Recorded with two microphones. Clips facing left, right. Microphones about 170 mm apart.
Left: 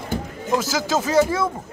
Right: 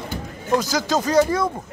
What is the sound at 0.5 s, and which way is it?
Speech, 5° left (ahead or behind).